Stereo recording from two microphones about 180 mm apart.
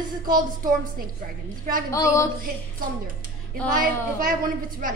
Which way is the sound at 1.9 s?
15° left (ahead or behind).